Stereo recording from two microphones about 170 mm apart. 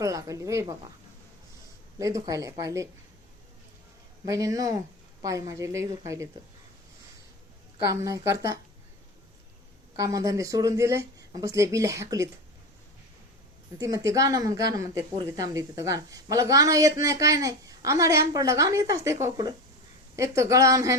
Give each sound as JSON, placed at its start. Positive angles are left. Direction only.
{"t": 0.0, "sound": "a woman's voice", "side_deg": -20}
{"t": 2.0, "sound": "a woman's voice", "side_deg": -20}
{"t": 4.3, "sound": "a woman's voice", "side_deg": -20}
{"t": 7.8, "sound": "a woman's voice", "side_deg": -20}
{"t": 9.9, "sound": "a woman's voice", "side_deg": -20}
{"t": 13.7, "sound": "a woman's voice", "side_deg": -20}